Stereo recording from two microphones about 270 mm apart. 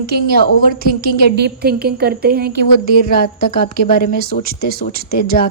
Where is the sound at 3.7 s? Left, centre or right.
Left.